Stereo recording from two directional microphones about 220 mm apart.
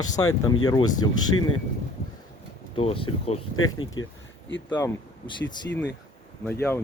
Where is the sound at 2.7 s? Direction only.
25° left (ahead or behind).